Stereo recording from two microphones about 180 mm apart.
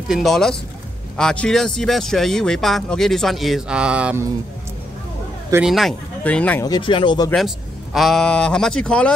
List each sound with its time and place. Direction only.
0.1 s speech: centre (ahead or behind)
5.5 s speech: 5° right (ahead or behind)
6.6 s speech: 25° left (ahead or behind)
7.3 s speech: centre (ahead or behind)